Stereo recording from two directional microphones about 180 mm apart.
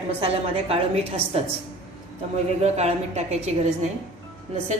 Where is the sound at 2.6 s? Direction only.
40° right (ahead or behind).